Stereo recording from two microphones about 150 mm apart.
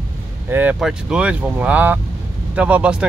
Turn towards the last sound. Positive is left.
turn(degrees=-5)  # may be behind; listen again after turning